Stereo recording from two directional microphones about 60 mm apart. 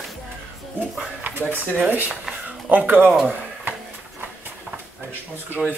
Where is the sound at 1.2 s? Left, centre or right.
Right.